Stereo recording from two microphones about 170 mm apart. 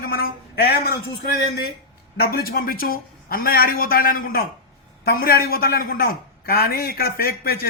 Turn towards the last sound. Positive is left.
turn(degrees=65)  # may be behind; listen again after turning